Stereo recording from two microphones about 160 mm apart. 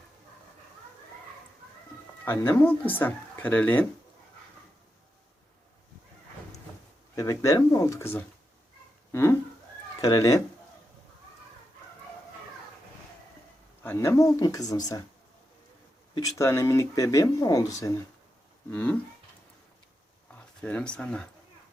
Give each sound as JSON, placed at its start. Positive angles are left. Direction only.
{"t": 2.2, "sound": "speech", "side_deg": 15}
{"t": 7.2, "sound": "speech", "side_deg": 20}
{"t": 9.1, "sound": "a sound", "side_deg": 15}
{"t": 10.0, "sound": "speech", "side_deg": 20}
{"t": 13.8, "sound": "speech", "side_deg": 15}
{"t": 16.1, "sound": "speech", "side_deg": 20}
{"t": 18.7, "sound": "speech", "side_deg": 10}
{"t": 20.6, "sound": "speech", "side_deg": 5}